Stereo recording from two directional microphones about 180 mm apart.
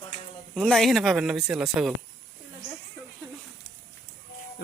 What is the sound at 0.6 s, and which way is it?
Speech, centre (ahead or behind).